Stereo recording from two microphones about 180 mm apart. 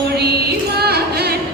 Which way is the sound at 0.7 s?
65° right (ahead or behind).